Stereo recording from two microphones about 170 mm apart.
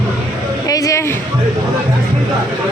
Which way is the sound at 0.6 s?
20° left (ahead or behind).